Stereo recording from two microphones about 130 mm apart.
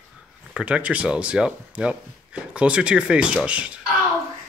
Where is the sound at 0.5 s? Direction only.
10° right (ahead or behind).